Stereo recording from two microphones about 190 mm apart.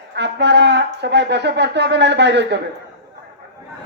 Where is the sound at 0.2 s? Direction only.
65° right (ahead or behind).